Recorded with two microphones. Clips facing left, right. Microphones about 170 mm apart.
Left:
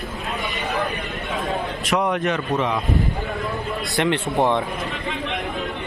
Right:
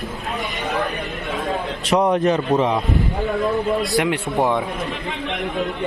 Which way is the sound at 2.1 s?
35° right (ahead or behind).